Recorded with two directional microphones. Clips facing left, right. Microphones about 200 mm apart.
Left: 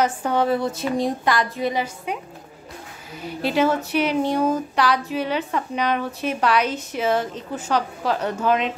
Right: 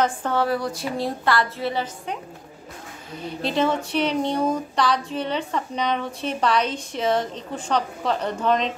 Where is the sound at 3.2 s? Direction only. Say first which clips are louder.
Left 2 dB; 5° left (ahead or behind).